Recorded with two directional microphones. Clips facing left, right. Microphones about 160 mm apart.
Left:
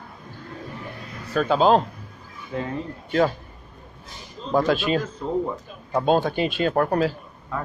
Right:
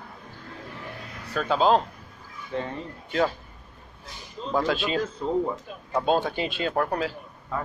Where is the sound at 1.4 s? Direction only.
15° left (ahead or behind).